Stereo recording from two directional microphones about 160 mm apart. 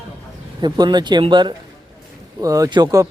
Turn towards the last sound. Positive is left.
turn(degrees=-25)  # may be behind; listen again after turning